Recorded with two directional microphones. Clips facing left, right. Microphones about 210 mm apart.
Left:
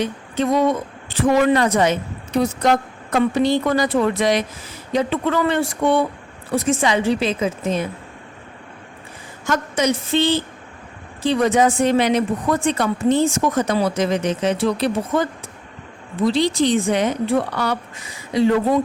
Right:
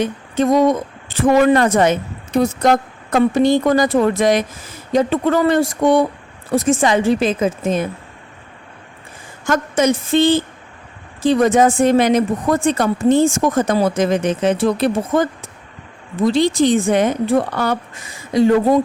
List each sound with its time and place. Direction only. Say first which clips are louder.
0.0 s a woman's voice: right 4 dB; 45° right (ahead or behind)
9.5 s a woman's voice: right 4 dB; 50° right (ahead or behind)